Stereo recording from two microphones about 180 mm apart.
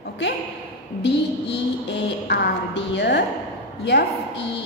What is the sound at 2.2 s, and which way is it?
Speech, 70° left (ahead or behind).